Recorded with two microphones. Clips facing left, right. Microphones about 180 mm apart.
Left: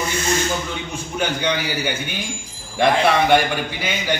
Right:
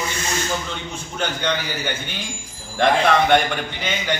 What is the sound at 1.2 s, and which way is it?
A man's voice, 10° left (ahead or behind).